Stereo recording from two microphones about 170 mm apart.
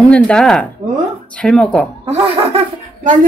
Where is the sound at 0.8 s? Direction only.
50° right (ahead or behind).